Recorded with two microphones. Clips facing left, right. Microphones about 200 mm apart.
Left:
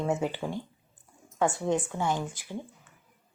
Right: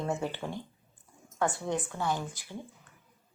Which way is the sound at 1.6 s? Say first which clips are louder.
Left 4 dB; 15° left (ahead or behind).